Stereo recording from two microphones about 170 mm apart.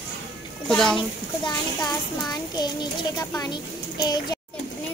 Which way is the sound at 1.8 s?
25° left (ahead or behind).